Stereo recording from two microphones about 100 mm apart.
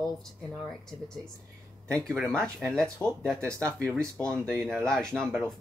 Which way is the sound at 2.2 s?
5° left (ahead or behind).